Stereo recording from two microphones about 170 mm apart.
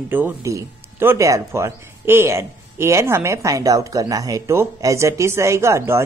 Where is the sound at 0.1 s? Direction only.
15° right (ahead or behind).